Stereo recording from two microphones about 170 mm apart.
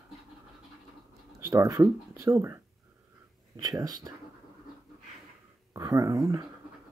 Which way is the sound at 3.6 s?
20° right (ahead or behind).